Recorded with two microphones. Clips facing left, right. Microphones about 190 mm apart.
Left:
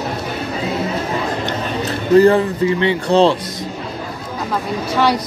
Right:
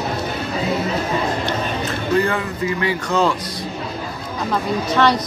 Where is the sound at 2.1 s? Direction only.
35° left (ahead or behind).